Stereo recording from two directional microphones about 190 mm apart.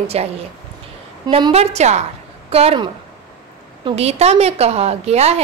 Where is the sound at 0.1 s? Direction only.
35° right (ahead or behind).